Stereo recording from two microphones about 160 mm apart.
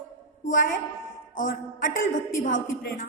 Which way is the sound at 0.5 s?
55° left (ahead or behind).